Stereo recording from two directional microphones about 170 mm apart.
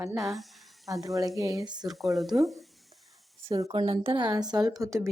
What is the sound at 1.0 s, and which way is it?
Speech, 20° right (ahead or behind).